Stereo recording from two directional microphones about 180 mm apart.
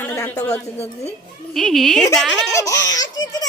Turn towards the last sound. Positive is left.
turn(degrees=20)  # may be behind; listen again after turning